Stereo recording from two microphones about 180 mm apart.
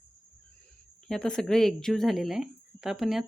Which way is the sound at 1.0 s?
5° left (ahead or behind).